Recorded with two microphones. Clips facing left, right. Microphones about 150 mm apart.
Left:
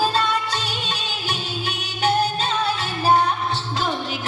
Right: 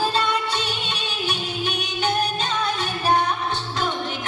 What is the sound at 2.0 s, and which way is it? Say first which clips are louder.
Music: left 4 dB; 35° left (ahead or behind).